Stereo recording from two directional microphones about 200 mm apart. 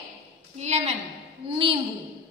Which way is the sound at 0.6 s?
35° right (ahead or behind).